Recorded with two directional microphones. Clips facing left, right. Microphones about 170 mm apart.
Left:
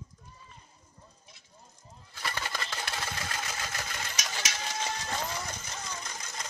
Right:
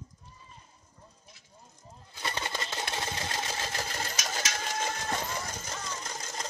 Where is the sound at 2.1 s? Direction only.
20° right (ahead or behind); by 5.0 s 50° right (ahead or behind).